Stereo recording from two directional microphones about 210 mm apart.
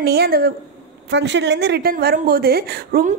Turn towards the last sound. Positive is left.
turn(degrees=-40)  # may be behind; listen again after turning